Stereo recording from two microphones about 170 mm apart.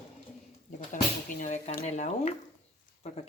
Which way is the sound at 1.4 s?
45° left (ahead or behind).